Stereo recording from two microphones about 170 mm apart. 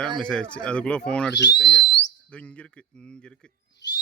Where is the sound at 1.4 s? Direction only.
90° left.